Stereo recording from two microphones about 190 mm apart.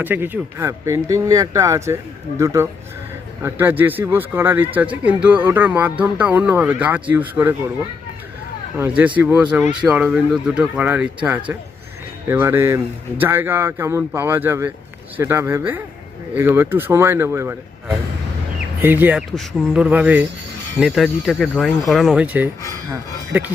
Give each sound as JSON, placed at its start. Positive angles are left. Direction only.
{"t": 0.0, "sound": "speech", "side_deg": -10}
{"t": 9.1, "sound": "speech", "side_deg": -10}